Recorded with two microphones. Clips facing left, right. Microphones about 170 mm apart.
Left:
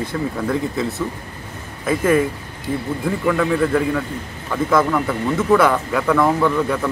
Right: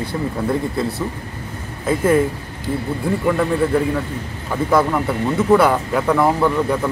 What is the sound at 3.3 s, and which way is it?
Speech, 15° right (ahead or behind).